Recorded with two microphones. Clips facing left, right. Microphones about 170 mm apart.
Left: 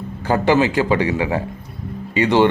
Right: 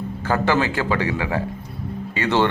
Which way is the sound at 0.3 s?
20° left (ahead or behind).